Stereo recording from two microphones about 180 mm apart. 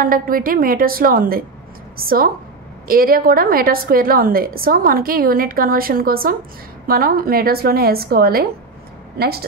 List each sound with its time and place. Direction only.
0.0 s a woman's voice: 50° right (ahead or behind)